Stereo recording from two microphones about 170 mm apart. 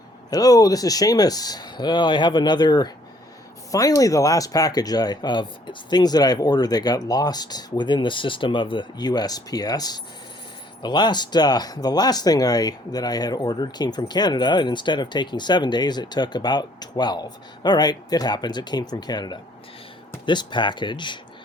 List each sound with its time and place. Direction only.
0.3 s speech: 20° left (ahead or behind)